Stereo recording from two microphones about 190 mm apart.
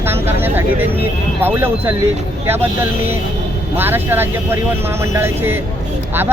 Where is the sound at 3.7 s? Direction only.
10° right (ahead or behind).